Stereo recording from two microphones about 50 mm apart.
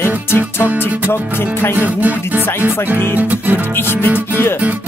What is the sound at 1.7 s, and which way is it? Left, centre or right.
Music, right.